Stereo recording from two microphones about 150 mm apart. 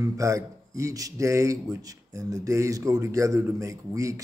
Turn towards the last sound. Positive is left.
turn(degrees=-20)  # may be behind; listen again after turning